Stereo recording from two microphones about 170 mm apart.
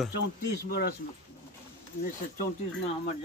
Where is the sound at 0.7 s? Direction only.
70° left (ahead or behind).